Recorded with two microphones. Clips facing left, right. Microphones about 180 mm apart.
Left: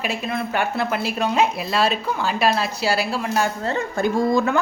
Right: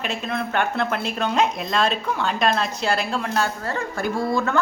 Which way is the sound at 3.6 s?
25° left (ahead or behind).